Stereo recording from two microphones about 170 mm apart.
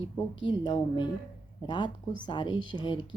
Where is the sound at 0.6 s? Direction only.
40° left (ahead or behind).